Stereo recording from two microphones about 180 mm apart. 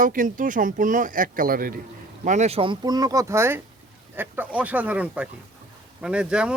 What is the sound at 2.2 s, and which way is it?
Speech, 40° right (ahead or behind).